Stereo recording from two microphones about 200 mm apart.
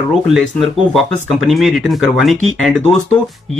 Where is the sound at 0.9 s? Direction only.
Centre (ahead or behind).